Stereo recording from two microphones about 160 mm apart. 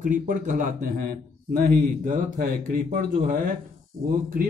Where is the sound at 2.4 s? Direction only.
70° right (ahead or behind).